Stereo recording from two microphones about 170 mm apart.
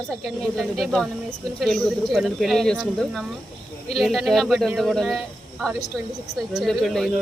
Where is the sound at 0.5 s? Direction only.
Centre (ahead or behind).